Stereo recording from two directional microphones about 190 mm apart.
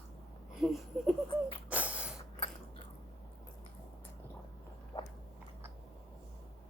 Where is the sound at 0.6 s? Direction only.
Centre (ahead or behind).